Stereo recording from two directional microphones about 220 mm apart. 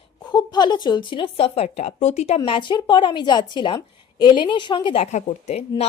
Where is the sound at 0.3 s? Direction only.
20° left (ahead or behind).